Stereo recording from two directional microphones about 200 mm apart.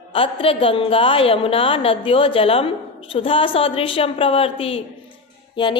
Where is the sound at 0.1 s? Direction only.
25° left (ahead or behind).